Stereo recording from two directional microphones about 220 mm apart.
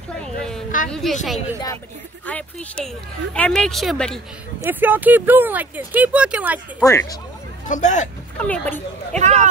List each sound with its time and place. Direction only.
0.1 s a sound: 5° left (ahead or behind)
0.8 s speech: centre (ahead or behind)
4.6 s speech: 10° right (ahead or behind)
6.8 s speech: 15° left (ahead or behind)
7.6 s speech: 35° left (ahead or behind)
8.4 s speech: 5° left (ahead or behind)
9.1 s speech: 30° right (ahead or behind)